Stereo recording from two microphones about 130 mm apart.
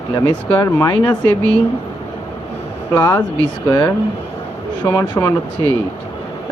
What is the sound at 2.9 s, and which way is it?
Speech, 15° left (ahead or behind).